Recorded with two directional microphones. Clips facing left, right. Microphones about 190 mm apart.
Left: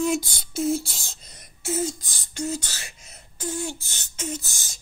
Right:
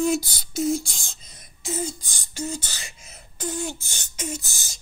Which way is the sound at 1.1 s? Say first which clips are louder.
Left 1 dB; 60° left (ahead or behind).